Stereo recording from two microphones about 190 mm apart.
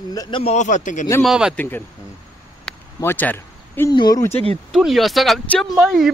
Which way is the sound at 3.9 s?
20° left (ahead or behind).